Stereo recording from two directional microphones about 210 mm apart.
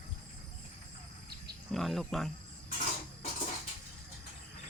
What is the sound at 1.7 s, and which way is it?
Speech, centre (ahead or behind).